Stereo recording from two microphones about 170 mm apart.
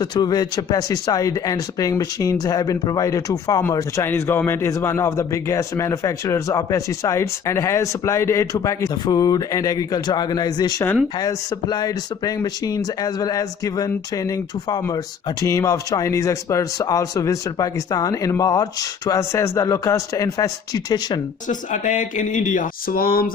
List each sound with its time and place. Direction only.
0.0 s speech: 25° left (ahead or behind)
21.4 s speech: 50° left (ahead or behind)